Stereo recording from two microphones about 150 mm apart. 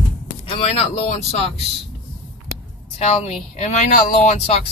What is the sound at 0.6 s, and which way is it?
Speech, 45° left (ahead or behind).